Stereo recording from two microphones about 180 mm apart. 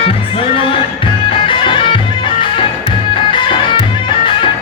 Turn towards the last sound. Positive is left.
turn(degrees=30)  # may be behind; listen again after turning